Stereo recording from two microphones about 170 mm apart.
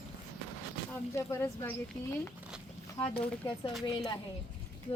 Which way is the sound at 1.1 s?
15° left (ahead or behind).